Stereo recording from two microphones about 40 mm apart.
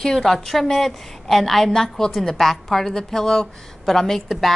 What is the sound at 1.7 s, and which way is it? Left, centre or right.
A woman's voice, centre.